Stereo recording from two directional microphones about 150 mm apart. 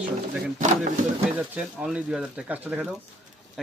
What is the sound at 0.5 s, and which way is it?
Speech, 55° right (ahead or behind).